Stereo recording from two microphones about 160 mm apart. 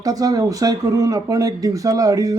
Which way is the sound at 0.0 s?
25° right (ahead or behind).